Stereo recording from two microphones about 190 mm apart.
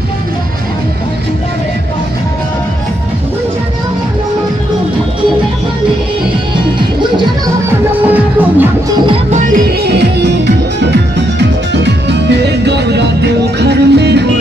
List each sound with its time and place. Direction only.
8.1 s music: 10° right (ahead or behind)
9.8 s music: 60° right (ahead or behind)